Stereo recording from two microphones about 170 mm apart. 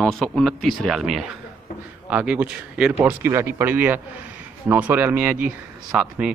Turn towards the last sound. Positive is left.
turn(degrees=-5)  # may be behind; listen again after turning